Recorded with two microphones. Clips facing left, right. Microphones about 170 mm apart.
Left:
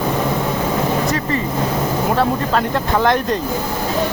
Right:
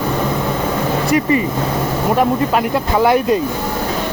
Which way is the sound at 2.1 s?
10° right (ahead or behind).